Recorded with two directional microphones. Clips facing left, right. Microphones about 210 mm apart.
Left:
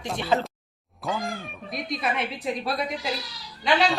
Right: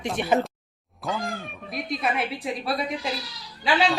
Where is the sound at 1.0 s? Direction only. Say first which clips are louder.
Even; centre (ahead or behind).